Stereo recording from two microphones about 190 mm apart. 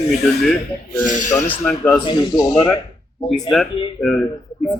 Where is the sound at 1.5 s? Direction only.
10° left (ahead or behind).